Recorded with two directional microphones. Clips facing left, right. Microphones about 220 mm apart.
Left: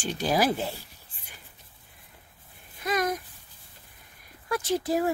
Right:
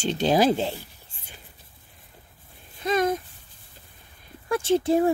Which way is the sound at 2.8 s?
25° right (ahead or behind).